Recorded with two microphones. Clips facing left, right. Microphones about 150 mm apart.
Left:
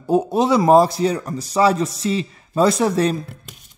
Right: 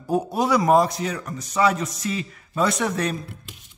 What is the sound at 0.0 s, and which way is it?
A man's voice, 25° left (ahead or behind).